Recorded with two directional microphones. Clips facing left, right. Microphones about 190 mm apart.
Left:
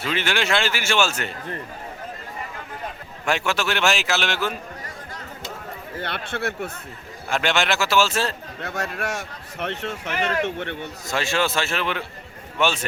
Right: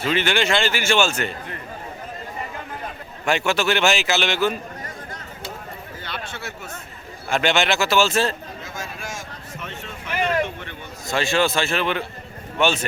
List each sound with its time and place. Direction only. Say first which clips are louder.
0.0 s a man's voice: right 3 dB; centre (ahead or behind)
3.2 s a man's voice: right 3 dB; centre (ahead or behind)
6.0 s speech: left 7 dB; 60° left (ahead or behind)
7.3 s a man's voice: right 2 dB; centre (ahead or behind)
8.6 s speech: left 8 dB; 65° left (ahead or behind)
11.1 s a man's voice: right 3 dB; 5° left (ahead or behind)